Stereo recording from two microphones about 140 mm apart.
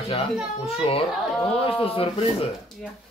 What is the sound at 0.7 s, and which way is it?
Speech, 45° left (ahead or behind).